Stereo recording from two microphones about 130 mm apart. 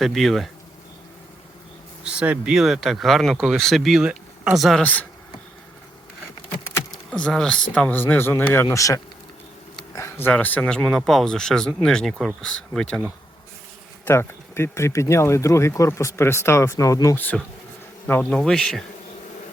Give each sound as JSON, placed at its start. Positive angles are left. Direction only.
{"t": 0.0, "sound": "speech", "side_deg": 0}
{"t": 2.0, "sound": "speech", "side_deg": -10}
{"t": 4.8, "sound": "speech", "side_deg": 10}
{"t": 6.9, "sound": "speech", "side_deg": 5}
{"t": 14.0, "sound": "speech", "side_deg": 20}
{"t": 18.0, "sound": "speech", "side_deg": 10}